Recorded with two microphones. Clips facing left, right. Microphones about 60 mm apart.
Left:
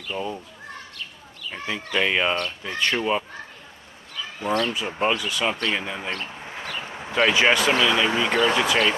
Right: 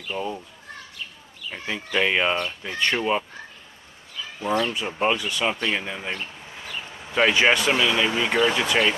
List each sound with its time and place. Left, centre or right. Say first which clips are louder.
0.0 s speech: even; centre
1.5 s speech: even; centre
4.6 s speech: even; centre
6.8 s a sound: left 4 dB; left
7.2 s speech: even; centre